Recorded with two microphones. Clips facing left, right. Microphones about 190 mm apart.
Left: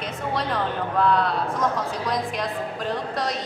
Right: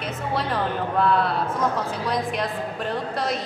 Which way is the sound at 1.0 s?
5° right (ahead or behind).